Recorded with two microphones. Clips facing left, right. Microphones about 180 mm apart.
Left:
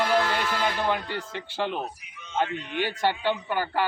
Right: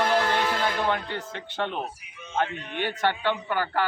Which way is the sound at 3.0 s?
15° left (ahead or behind).